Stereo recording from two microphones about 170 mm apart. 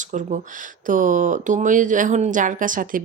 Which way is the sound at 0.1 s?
45° right (ahead or behind).